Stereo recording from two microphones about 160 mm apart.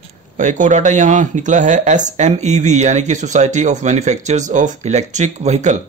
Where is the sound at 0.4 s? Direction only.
50° right (ahead or behind).